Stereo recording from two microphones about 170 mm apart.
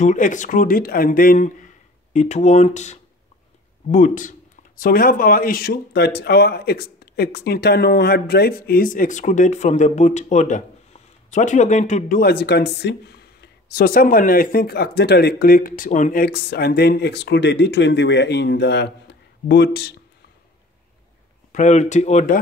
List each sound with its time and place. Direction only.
0.0 s speech: 45° left (ahead or behind)
2.1 s speech: 40° left (ahead or behind)
12.2 s speech: 65° left (ahead or behind)
21.5 s speech: 45° left (ahead or behind)